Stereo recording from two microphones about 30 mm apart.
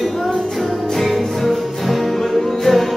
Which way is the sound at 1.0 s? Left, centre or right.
Centre.